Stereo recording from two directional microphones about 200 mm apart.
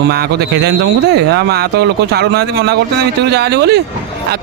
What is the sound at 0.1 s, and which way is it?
A man's voice, 50° right (ahead or behind).